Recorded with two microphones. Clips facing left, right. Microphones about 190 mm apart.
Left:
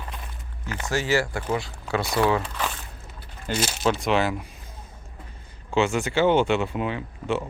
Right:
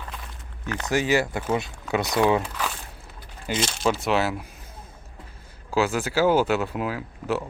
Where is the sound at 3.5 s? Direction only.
5° left (ahead or behind).